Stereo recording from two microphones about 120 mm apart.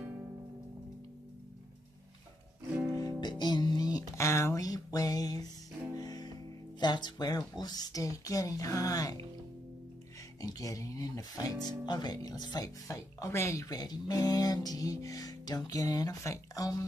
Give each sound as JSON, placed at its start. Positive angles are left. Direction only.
{"t": 2.9, "sound": "music", "side_deg": 35}
{"t": 4.2, "sound": "a sound", "side_deg": 25}
{"t": 5.9, "sound": "music", "side_deg": 35}
{"t": 6.8, "sound": "speech", "side_deg": 40}
{"t": 10.4, "sound": "speech", "side_deg": 30}